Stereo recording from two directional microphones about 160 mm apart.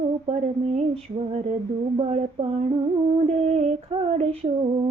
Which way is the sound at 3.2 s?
40° right (ahead or behind).